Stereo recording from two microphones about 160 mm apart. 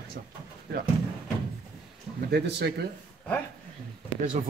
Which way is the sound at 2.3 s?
90° right.